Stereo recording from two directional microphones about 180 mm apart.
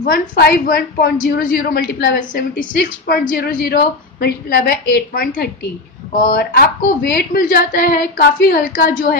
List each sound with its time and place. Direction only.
0.0 s a woman's voice: 55° left (ahead or behind)